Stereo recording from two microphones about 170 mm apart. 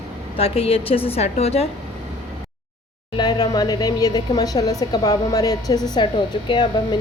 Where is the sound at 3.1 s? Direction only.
25° left (ahead or behind).